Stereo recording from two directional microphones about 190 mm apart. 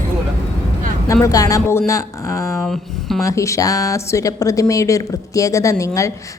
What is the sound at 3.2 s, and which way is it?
A woman's voice, 15° left (ahead or behind).